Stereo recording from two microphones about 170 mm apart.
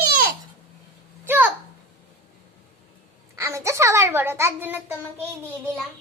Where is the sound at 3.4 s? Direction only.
15° right (ahead or behind).